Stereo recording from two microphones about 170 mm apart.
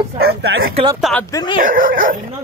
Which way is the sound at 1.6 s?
55° right (ahead or behind).